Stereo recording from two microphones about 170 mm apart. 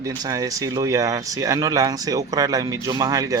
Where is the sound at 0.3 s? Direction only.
20° right (ahead or behind).